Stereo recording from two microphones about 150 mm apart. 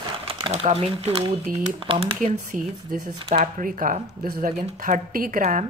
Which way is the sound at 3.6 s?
65° right (ahead or behind).